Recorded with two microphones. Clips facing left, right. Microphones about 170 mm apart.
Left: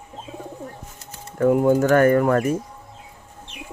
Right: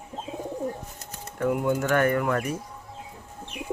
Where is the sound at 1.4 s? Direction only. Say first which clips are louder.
Left 8 dB; 40° left (ahead or behind).